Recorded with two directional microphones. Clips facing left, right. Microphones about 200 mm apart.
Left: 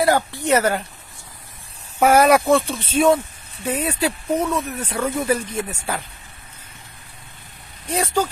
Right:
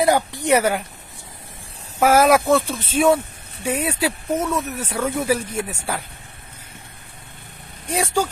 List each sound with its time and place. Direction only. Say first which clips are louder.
0.0 s speech: even; 15° right (ahead or behind)
2.0 s speech: left 1 dB; centre (ahead or behind)
7.8 s speech: even; 10° right (ahead or behind)